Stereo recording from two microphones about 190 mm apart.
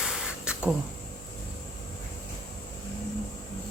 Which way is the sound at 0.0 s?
5° right (ahead or behind).